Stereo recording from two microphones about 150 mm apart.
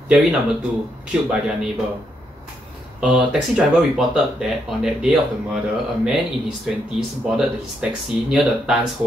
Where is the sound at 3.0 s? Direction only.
5° right (ahead or behind).